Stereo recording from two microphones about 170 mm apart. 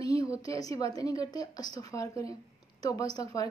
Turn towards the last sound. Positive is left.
turn(degrees=20)  # may be behind; listen again after turning